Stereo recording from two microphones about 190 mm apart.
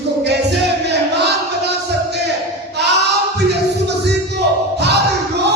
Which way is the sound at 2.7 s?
60° right (ahead or behind).